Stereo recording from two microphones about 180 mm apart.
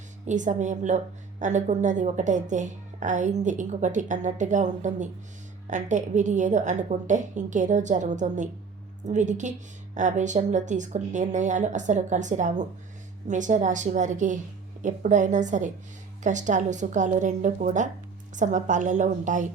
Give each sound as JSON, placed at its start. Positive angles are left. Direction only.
{"t": 0.3, "sound": "a woman's voice", "side_deg": -45}